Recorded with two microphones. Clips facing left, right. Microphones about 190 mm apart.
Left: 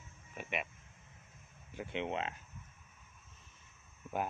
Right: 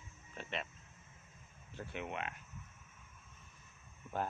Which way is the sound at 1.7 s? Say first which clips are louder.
Left 5 dB; 15° left (ahead or behind).